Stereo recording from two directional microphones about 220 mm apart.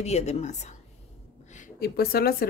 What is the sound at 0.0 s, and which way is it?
Speech, 30° left (ahead or behind).